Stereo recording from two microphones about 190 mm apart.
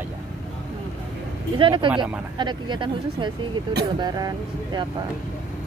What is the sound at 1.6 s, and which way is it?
Speech, 25° right (ahead or behind).